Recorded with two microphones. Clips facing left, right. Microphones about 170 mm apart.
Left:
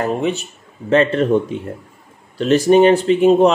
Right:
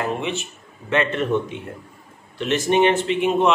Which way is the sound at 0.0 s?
40° left (ahead or behind).